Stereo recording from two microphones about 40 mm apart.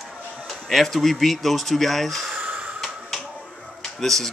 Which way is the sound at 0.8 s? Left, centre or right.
Centre.